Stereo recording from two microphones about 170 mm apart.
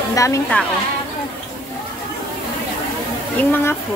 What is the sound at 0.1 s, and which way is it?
Speech, 20° left (ahead or behind).